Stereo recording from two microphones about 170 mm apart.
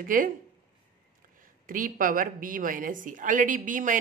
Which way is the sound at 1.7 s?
55° right (ahead or behind).